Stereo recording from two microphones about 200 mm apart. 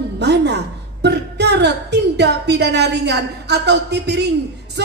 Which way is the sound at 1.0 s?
55° right (ahead or behind).